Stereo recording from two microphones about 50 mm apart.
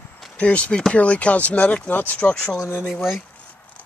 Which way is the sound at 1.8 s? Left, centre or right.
Left.